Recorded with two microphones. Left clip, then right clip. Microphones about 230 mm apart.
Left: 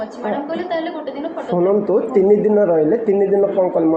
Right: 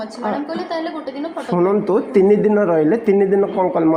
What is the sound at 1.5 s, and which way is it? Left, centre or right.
A man's voice, right.